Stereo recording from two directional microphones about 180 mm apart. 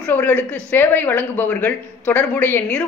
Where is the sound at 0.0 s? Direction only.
10° left (ahead or behind).